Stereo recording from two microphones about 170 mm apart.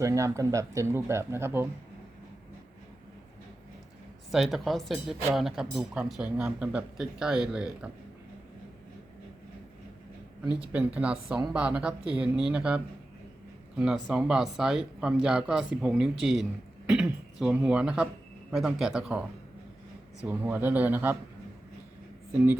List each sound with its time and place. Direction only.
0.0 s speech: 20° right (ahead or behind)
4.3 s speech: centre (ahead or behind)
10.6 s speech: 10° right (ahead or behind)
20.2 s speech: 10° right (ahead or behind)